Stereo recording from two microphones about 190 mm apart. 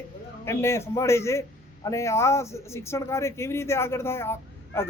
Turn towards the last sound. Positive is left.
turn(degrees=15)  # may be behind; listen again after turning